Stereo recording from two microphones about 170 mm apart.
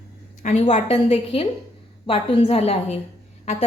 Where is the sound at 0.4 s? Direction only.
40° left (ahead or behind).